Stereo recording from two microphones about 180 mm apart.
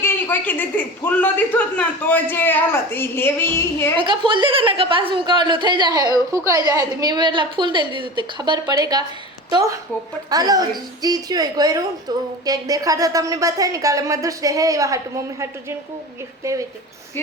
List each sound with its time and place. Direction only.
0.0 s a man's voice: 10° left (ahead or behind)
3.9 s a woman's voice: 25° right (ahead or behind)